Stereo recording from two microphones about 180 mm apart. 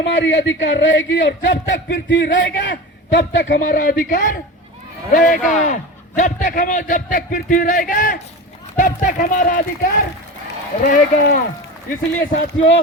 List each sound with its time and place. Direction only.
0.0 s a man's voice: 80° left
3.6 s a man's voice: 50° left (ahead or behind)
12.3 s speech: 90° left